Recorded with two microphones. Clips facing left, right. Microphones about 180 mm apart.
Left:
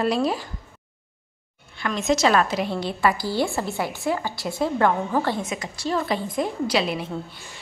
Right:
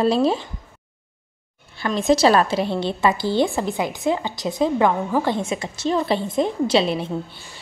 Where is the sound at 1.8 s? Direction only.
30° right (ahead or behind); by 5.4 s 15° right (ahead or behind).